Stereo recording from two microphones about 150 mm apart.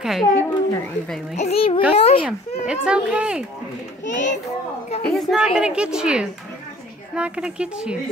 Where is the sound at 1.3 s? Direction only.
45° left (ahead or behind).